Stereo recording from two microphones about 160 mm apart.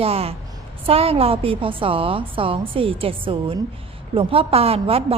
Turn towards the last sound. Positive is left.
turn(degrees=-35)  # may be behind; listen again after turning